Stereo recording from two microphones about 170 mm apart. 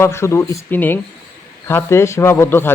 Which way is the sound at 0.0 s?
15° left (ahead or behind).